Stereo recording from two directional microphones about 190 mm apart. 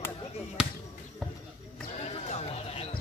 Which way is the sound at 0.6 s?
5° right (ahead or behind).